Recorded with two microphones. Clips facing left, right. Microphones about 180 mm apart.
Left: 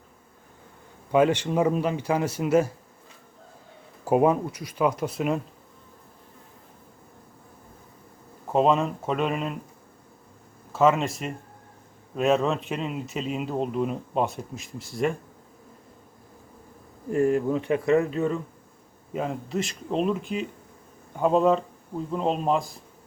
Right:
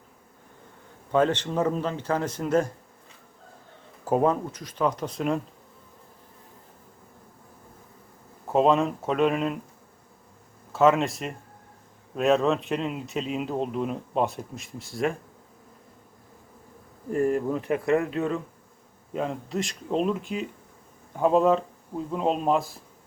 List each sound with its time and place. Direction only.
1.1 s speech: 10° left (ahead or behind)
4.0 s speech: 10° left (ahead or behind)
8.5 s a man's voice: centre (ahead or behind)
10.7 s a man's voice: centre (ahead or behind)
17.1 s speech: 35° right (ahead or behind)
17.4 s a man's voice: centre (ahead or behind)
19.1 s a man's voice: 5° left (ahead or behind)